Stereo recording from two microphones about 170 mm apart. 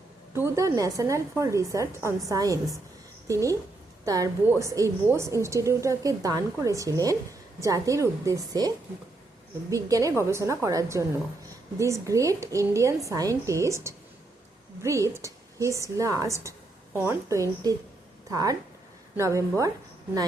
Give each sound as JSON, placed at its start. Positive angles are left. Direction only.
{"t": 0.3, "sound": "a woman's voice", "side_deg": -15}